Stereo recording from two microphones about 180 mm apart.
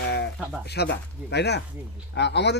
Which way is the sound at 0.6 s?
65° left (ahead or behind).